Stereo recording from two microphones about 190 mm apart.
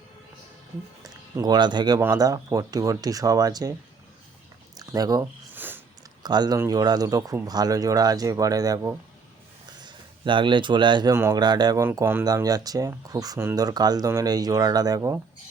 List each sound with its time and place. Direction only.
1.4 s speech: 20° right (ahead or behind)
4.8 s a sound: 20° right (ahead or behind)
6.2 s speech: 20° right (ahead or behind)
11.1 s speech: 15° right (ahead or behind)